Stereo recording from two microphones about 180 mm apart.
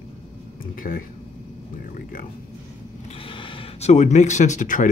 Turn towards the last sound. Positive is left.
turn(degrees=45)  # may be behind; listen again after turning